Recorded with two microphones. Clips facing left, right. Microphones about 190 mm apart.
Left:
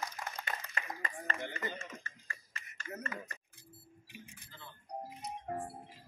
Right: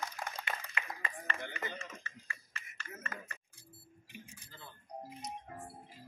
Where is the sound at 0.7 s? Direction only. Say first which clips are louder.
Left 1 dB; 40° left (ahead or behind).